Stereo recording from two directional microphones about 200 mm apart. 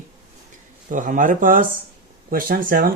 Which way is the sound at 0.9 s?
40° right (ahead or behind).